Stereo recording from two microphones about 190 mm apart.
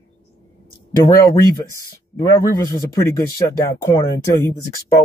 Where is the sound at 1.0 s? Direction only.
15° left (ahead or behind).